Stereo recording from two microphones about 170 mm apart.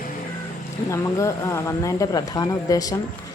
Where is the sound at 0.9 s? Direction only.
15° left (ahead or behind).